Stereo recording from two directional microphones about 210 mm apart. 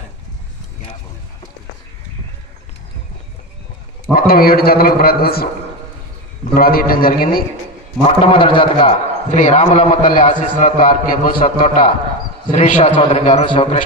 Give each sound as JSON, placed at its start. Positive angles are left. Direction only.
{"t": 4.1, "sound": "a man's voice", "side_deg": 45}
{"t": 6.5, "sound": "a man's voice", "side_deg": 45}
{"t": 8.0, "sound": "a man's voice", "side_deg": 25}
{"t": 12.9, "sound": "a man's voice", "side_deg": 25}